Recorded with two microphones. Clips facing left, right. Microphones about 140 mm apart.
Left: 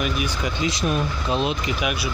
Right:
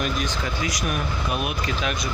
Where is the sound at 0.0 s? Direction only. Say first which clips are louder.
Left 1 dB; 10° left (ahead or behind).